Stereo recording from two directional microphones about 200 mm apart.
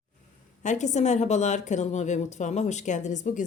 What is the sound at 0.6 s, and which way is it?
A woman's voice, 35° left (ahead or behind).